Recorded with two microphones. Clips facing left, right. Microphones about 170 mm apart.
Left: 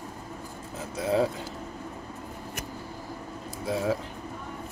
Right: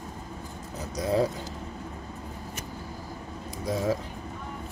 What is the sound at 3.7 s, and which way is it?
Speech, 40° right (ahead or behind).